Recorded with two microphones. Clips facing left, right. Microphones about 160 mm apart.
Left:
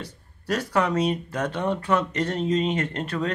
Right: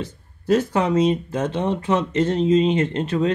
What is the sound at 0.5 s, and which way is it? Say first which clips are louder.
Speech: right 5 dB; 25° right (ahead or behind).